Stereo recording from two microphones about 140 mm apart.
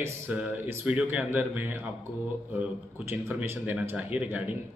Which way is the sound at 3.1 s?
15° right (ahead or behind).